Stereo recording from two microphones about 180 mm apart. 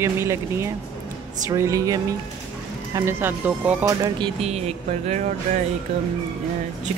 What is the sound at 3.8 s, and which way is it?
Speech, 20° right (ahead or behind).